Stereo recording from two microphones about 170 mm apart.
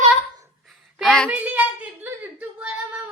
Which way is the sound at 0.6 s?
Centre (ahead or behind).